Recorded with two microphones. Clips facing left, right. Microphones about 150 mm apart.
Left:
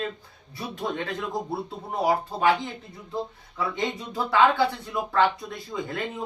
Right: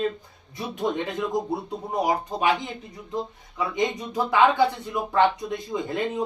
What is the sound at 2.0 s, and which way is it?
Speech, 15° right (ahead or behind).